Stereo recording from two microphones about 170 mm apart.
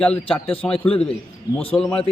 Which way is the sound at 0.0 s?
5° left (ahead or behind).